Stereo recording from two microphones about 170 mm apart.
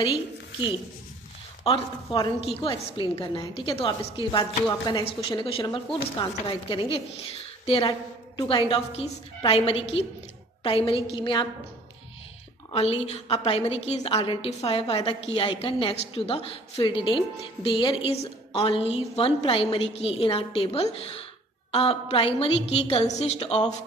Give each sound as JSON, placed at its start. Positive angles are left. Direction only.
{"t": 1.6, "sound": "a woman's voice", "side_deg": 25}
{"t": 12.7, "sound": "a woman's voice", "side_deg": 35}